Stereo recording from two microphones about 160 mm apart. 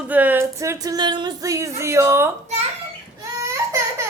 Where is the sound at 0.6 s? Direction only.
20° right (ahead or behind).